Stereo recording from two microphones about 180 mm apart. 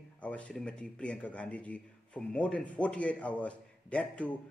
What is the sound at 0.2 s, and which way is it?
A man's voice, 5° left (ahead or behind).